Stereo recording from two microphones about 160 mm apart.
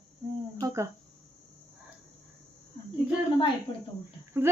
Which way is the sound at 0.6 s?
20° right (ahead or behind).